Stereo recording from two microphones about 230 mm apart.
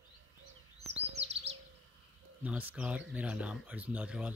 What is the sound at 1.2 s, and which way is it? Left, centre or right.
Chirp, right.